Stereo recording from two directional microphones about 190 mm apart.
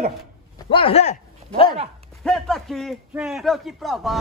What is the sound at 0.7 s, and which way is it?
Speech, 30° left (ahead or behind).